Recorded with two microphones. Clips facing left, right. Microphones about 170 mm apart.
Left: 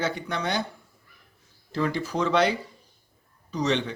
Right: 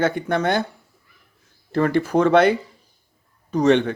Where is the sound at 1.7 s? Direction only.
55° right (ahead or behind).